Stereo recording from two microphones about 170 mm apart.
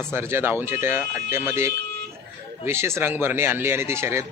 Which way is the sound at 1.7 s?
80° right.